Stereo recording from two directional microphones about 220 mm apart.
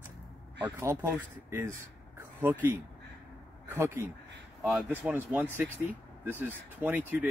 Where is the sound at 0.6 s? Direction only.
10° right (ahead or behind).